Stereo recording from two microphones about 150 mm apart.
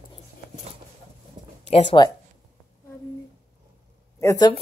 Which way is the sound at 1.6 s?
50° left (ahead or behind).